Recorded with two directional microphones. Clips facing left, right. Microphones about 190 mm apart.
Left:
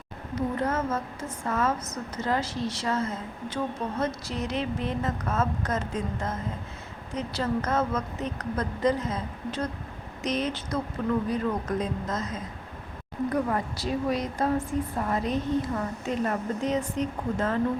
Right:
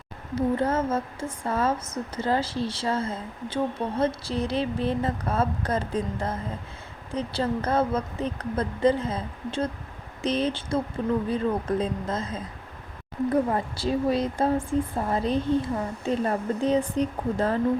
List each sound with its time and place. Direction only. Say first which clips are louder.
0.3 s a woman's voice: right 4 dB; 30° right (ahead or behind)